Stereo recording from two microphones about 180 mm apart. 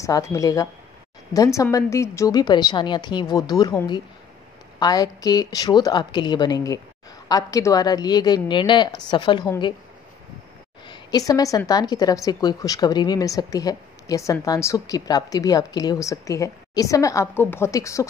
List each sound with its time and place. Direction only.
0.0 s a woman's voice: 15° left (ahead or behind)
10.9 s a woman's voice: 20° left (ahead or behind)